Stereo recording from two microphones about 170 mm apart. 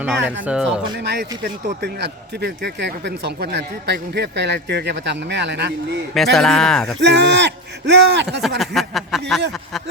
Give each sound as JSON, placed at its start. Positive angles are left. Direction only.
{"t": 0.0, "sound": "speech", "side_deg": -10}
{"t": 0.9, "sound": "speech", "side_deg": -70}
{"t": 6.3, "sound": "speech", "side_deg": 5}
{"t": 7.0, "sound": "speech", "side_deg": -90}
{"t": 8.4, "sound": "speech", "side_deg": 0}